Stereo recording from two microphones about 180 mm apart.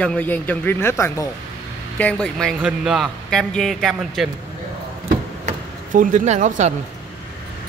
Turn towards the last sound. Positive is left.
turn(degrees=-40)  # may be behind; listen again after turning